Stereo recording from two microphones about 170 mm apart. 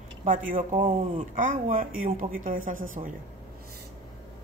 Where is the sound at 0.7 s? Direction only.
35° right (ahead or behind).